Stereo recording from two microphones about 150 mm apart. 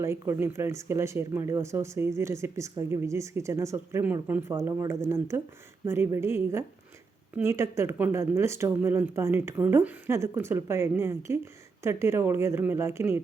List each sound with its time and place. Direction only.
0.0 s speech: 15° right (ahead or behind)